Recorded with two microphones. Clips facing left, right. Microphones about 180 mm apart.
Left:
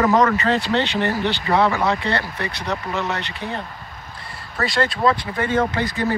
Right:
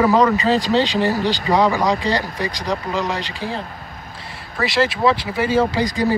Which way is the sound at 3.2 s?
30° right (ahead or behind).